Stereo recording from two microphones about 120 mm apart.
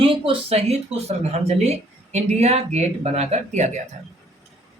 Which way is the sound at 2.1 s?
65° right (ahead or behind).